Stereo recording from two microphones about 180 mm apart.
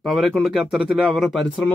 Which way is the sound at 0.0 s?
Centre (ahead or behind).